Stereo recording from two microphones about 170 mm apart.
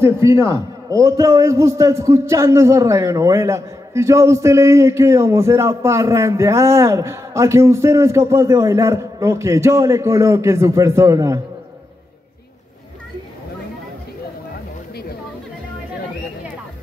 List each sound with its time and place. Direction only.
0.0 s a man's voice: 15° right (ahead or behind)